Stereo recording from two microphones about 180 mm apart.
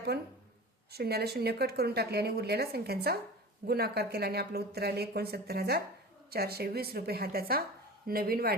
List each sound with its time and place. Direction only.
0.9 s speech: 60° right (ahead or behind)